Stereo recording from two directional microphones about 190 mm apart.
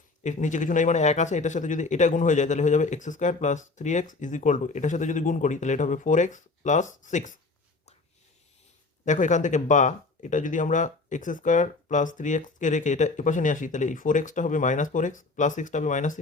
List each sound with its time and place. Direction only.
0.2 s speech: 40° left (ahead or behind)
9.0 s speech: 40° left (ahead or behind)